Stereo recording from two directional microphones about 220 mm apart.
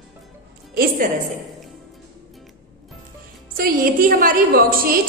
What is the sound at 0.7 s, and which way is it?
Speech, 40° right (ahead or behind).